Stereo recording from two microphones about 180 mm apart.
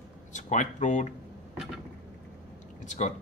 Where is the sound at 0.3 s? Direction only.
45° left (ahead or behind).